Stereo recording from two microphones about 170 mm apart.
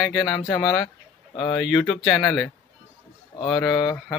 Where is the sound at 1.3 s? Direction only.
30° left (ahead or behind).